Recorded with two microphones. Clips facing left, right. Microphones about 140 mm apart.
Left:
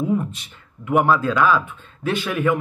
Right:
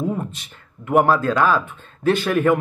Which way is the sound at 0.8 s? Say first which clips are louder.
Right 1 dB; 45° right (ahead or behind).